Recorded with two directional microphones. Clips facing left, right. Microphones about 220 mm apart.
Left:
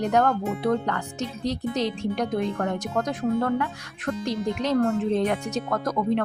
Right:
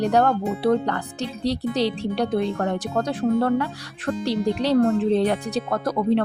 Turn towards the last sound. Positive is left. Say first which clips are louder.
# right 3 dB
turn(degrees=-30)  # may be behind; listen again after turning